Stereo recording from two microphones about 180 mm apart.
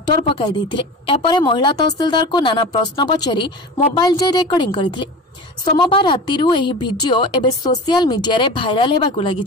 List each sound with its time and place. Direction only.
0.0 s a woman's voice: 25° left (ahead or behind)